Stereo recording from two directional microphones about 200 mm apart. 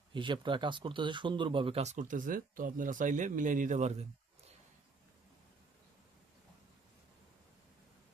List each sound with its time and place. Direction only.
0.1 s speech: 25° right (ahead or behind)